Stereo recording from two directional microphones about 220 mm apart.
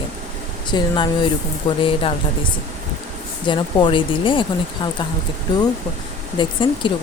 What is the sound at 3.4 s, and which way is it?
A woman's voice, 20° left (ahead or behind).